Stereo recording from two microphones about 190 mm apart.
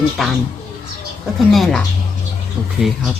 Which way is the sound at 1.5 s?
Centre (ahead or behind).